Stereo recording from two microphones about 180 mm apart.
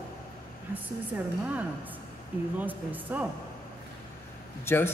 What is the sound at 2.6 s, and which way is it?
Speech, 10° right (ahead or behind).